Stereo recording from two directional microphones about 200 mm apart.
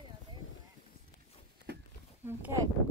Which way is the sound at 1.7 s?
55° right (ahead or behind).